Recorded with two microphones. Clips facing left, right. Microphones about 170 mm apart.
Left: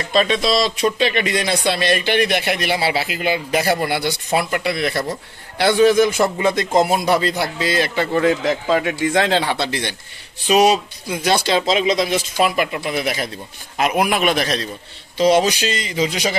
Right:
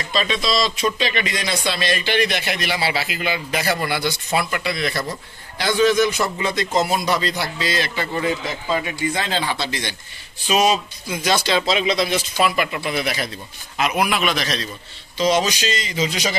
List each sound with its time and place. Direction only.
0.1 s speech: 55° left (ahead or behind); by 4.6 s 40° left (ahead or behind)
4.6 s speech: 60° left (ahead or behind)
8.1 s speech: 65° left (ahead or behind)
11.4 s speech: 45° left (ahead or behind)